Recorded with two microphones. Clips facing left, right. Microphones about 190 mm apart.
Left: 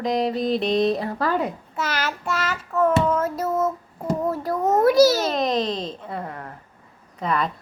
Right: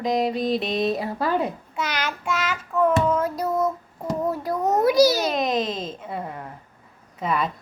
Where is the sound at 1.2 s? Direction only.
25° right (ahead or behind).